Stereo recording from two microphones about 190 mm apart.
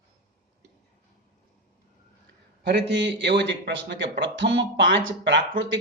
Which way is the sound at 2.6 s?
65° right (ahead or behind).